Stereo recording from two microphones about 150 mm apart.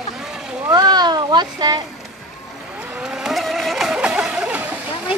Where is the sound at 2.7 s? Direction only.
10° right (ahead or behind).